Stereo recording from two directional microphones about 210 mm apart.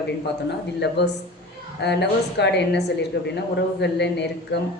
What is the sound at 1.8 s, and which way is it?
A man's voice, 55° left (ahead or behind).